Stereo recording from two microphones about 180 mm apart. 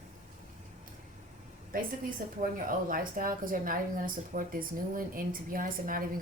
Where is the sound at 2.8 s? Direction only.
50° right (ahead or behind).